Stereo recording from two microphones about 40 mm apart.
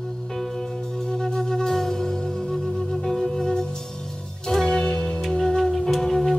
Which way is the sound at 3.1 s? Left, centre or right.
Centre.